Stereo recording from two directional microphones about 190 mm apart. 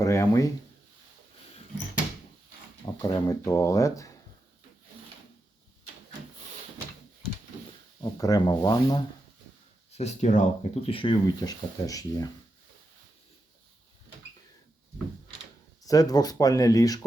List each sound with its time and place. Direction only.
0.0 s a sound: 15° left (ahead or behind)
2.8 s speech: 20° left (ahead or behind)
7.7 s speech: 20° left (ahead or behind)
9.9 s speech: 35° left (ahead or behind); by 12.3 s 20° left (ahead or behind)
15.8 s speech: 20° left (ahead or behind)